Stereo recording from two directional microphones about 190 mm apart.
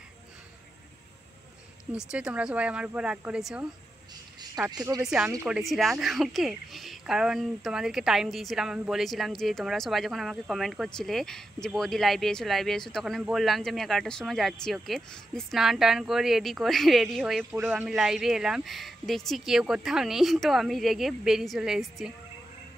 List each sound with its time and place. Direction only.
1.9 s speech: 5° right (ahead or behind)
5.0 s speech: 5° right (ahead or behind)